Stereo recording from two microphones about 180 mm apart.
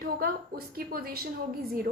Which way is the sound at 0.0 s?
55° right (ahead or behind).